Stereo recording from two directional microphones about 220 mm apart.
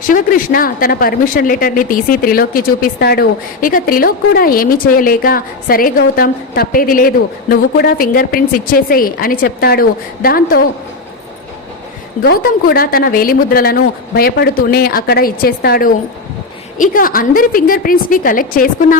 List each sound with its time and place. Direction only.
0.1 s a woman's voice: 40° left (ahead or behind)
12.4 s a woman's voice: 45° left (ahead or behind)